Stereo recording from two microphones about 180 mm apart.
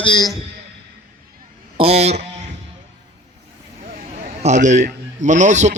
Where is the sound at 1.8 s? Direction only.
35° right (ahead or behind).